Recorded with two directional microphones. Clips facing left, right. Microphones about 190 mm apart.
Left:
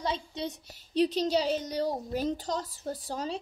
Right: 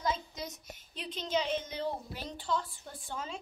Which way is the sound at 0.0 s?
30° left (ahead or behind).